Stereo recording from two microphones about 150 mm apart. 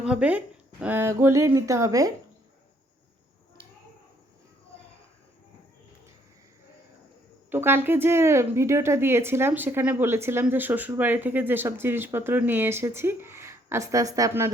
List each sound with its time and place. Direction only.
0.0 s speech: 5° right (ahead or behind)
7.5 s speech: 15° right (ahead or behind)